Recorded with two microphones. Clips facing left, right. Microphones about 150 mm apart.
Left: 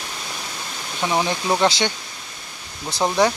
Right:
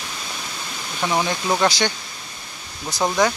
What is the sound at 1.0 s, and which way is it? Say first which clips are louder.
Speech: even; 15° left (ahead or behind).